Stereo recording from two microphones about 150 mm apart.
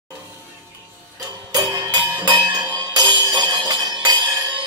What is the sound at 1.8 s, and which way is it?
Music, 25° right (ahead or behind).